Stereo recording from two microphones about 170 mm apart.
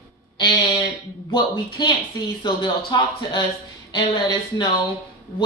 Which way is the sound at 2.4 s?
25° left (ahead or behind).